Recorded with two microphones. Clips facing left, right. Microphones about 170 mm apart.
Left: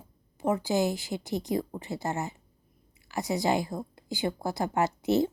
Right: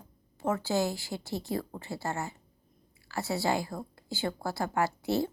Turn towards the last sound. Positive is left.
turn(degrees=20)  # may be behind; listen again after turning